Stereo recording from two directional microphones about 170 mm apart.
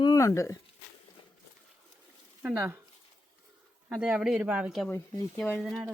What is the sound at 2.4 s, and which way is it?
Speech, 15° right (ahead or behind).